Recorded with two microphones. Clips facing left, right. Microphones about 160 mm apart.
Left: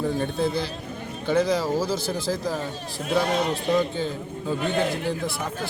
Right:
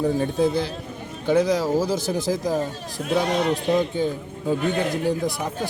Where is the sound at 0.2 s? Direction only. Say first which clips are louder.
Right 4 dB; 15° right (ahead or behind).